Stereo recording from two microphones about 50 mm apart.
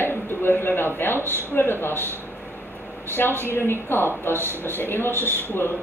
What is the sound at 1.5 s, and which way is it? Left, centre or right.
Speech, left.